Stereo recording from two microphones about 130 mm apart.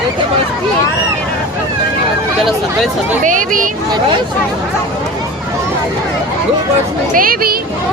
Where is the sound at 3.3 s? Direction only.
90° right.